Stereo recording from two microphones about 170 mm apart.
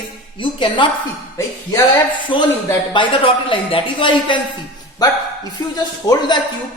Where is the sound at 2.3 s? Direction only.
30° left (ahead or behind).